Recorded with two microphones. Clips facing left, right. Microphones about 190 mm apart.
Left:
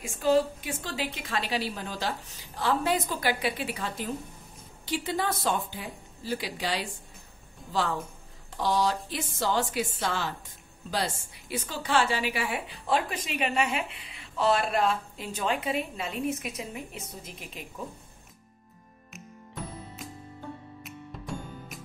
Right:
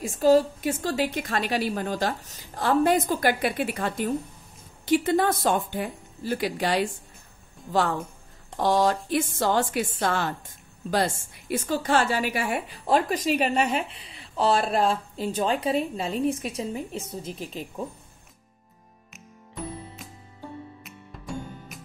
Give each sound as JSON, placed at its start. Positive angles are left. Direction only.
{"t": 0.0, "sound": "a woman's voice", "side_deg": -40}
{"t": 8.5, "sound": "a woman's voice", "side_deg": -50}
{"t": 19.1, "sound": "music", "side_deg": 0}